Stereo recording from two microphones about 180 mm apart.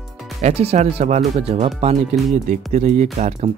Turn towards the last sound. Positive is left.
turn(degrees=-35)  # may be behind; listen again after turning